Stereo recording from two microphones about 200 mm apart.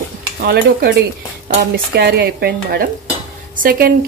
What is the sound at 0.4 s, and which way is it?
Stir, 50° right (ahead or behind).